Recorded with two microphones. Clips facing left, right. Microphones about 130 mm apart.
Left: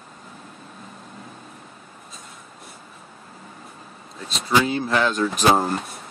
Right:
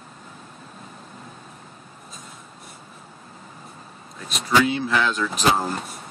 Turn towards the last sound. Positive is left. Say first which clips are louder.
# left 3 dB
turn(degrees=45)  # may be behind; listen again after turning